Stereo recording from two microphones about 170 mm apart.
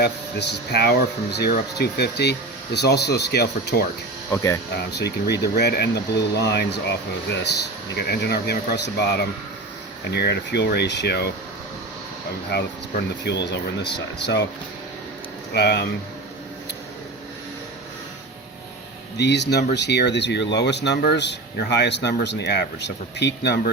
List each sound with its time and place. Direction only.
0.0 s speech: 75° left (ahead or behind)
4.9 s speech: 80° left
13.2 s speech: 85° left
15.5 s speech: 80° left
19.1 s speech: 90° left